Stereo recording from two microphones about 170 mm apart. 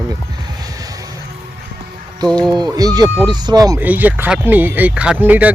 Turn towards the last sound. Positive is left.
turn(degrees=-10)  # may be behind; listen again after turning